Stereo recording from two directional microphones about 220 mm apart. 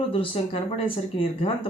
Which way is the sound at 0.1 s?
25° left (ahead or behind).